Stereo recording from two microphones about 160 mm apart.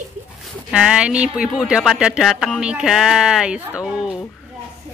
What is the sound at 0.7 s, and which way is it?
Speech, 5° right (ahead or behind).